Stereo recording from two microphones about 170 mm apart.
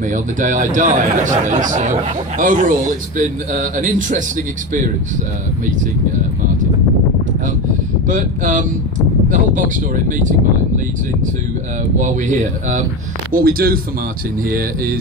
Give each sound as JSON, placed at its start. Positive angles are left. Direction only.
{"t": 0.1, "sound": "a man's voice", "side_deg": -50}
{"t": 8.1, "sound": "a man's voice", "side_deg": -50}
{"t": 12.0, "sound": "a man's voice", "side_deg": -45}
{"t": 13.3, "sound": "speech", "side_deg": -60}